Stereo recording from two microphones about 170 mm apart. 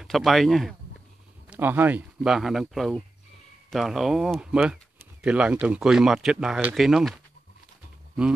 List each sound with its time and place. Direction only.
0.0 s speech: centre (ahead or behind)
1.5 s speech: 10° right (ahead or behind)